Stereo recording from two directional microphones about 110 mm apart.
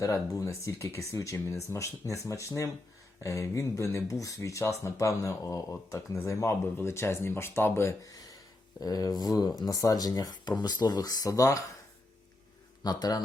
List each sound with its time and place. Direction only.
0.0 s speech: 30° left (ahead or behind)
12.8 s speech: 35° left (ahead or behind)